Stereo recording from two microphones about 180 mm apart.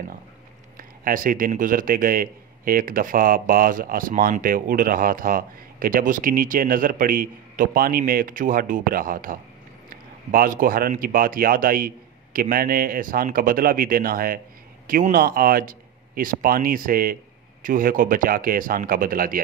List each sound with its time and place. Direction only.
0.7 s a man's voice: 50° right (ahead or behind)